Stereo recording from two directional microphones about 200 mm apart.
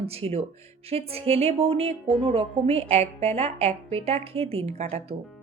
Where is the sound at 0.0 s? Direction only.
30° right (ahead or behind).